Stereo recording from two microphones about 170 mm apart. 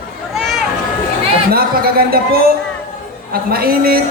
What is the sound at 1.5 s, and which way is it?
Speech, 60° right (ahead or behind).